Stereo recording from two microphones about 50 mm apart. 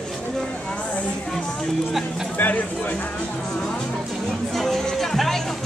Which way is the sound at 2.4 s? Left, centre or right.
Left.